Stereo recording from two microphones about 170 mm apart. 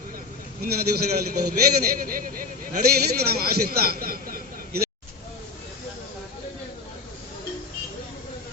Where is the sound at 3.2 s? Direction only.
65° right (ahead or behind).